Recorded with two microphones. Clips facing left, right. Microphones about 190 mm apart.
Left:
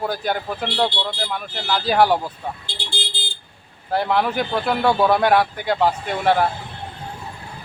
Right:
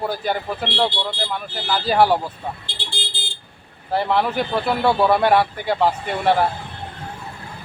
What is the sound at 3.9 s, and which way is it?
A man's voice, 5° right (ahead or behind).